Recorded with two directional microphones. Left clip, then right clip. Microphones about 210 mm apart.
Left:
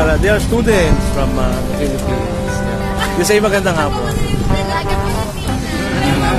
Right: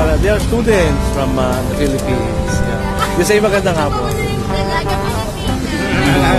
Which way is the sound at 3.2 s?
Centre (ahead or behind).